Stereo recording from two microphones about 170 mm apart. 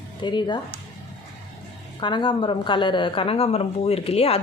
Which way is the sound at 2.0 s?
30° left (ahead or behind).